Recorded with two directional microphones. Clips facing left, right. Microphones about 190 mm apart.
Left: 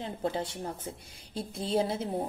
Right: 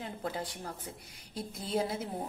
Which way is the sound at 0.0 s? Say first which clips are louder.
Left 5 dB; 25° left (ahead or behind).